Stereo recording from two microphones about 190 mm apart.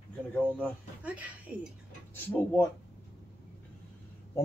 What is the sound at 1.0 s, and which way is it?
Speech, 10° right (ahead or behind).